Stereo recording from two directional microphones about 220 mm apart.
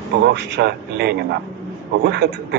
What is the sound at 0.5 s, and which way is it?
A man's voice, 50° right (ahead or behind).